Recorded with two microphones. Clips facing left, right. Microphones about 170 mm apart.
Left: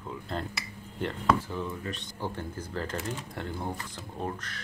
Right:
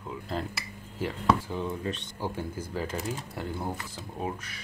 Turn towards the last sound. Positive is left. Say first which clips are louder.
# right 1 dB
turn(degrees=-10)  # may be behind; listen again after turning